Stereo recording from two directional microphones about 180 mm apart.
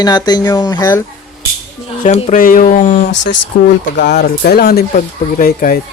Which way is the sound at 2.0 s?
40° left (ahead or behind).